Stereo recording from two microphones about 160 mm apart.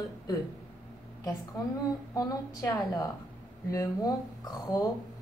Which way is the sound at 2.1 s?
20° left (ahead or behind).